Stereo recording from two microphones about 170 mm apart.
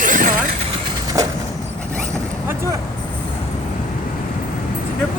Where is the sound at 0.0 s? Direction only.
50° right (ahead or behind).